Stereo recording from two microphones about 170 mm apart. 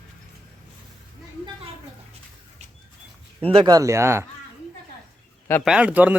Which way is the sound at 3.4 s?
30° right (ahead or behind).